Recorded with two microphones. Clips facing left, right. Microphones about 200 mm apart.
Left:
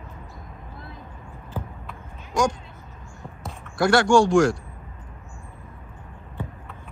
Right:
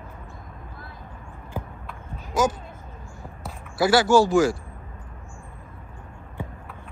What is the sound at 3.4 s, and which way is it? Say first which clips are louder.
A man's voice: even; 5° right (ahead or behind).